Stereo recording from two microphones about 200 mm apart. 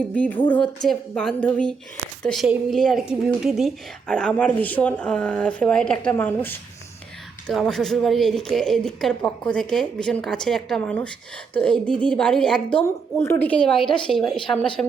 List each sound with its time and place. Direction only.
0.1 s a woman's voice: 10° left (ahead or behind)